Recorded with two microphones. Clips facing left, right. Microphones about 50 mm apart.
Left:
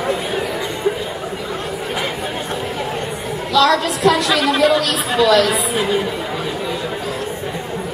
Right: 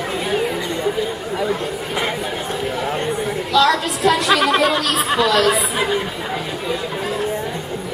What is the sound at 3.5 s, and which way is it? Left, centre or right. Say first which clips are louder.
Chatter: left 2 dB; centre.